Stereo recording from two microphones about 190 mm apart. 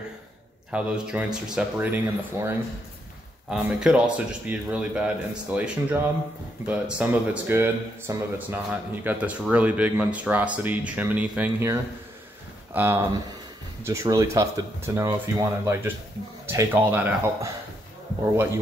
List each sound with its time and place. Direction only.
0.7 s a man's voice: 5° right (ahead or behind)